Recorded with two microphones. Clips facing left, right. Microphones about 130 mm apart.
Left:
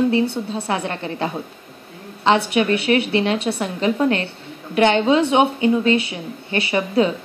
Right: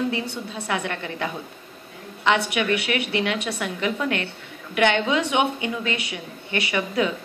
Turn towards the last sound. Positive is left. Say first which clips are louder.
# left 5 dB
turn(degrees=30)  # may be behind; listen again after turning